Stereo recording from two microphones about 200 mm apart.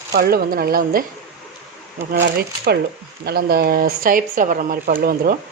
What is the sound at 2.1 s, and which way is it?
Speech, 50° right (ahead or behind).